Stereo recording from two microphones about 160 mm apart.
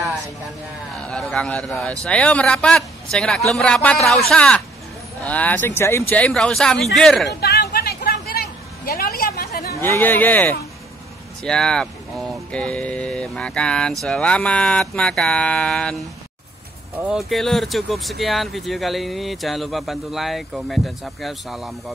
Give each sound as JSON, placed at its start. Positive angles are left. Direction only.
{"t": 1.0, "sound": "speech", "side_deg": 5}
{"t": 7.3, "sound": "a sound", "side_deg": 85}
{"t": 9.8, "sound": "speech", "side_deg": 10}
{"t": 17.0, "sound": "speech", "side_deg": -5}